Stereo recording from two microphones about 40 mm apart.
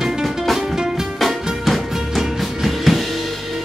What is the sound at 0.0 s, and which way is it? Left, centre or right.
Music, centre.